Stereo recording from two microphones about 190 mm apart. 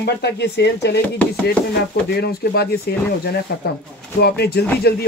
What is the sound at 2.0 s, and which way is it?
Speech, 55° left (ahead or behind).